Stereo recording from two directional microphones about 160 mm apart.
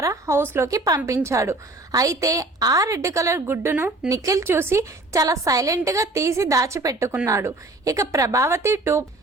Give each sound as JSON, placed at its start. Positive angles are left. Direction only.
{"t": 0.0, "sound": "a woman's voice", "side_deg": -20}